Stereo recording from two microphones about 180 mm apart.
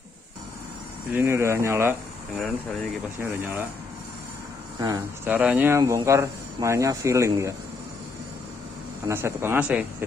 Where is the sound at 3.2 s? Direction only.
15° right (ahead or behind).